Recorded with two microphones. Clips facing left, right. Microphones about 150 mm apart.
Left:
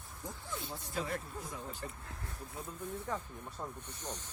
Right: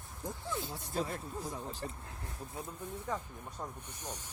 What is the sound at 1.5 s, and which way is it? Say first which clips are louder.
Speech: right 2 dB; 35° right (ahead or behind).